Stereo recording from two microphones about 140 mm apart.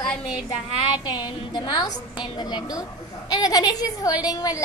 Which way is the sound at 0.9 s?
30° left (ahead or behind).